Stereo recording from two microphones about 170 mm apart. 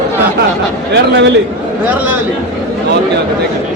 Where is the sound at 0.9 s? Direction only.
90° right.